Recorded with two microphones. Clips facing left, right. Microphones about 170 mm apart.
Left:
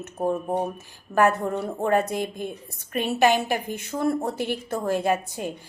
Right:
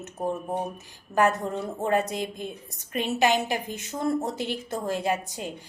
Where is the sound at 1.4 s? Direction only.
60° left (ahead or behind).